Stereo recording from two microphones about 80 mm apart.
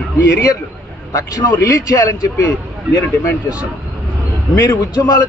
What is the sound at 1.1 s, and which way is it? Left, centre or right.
A man's voice, left.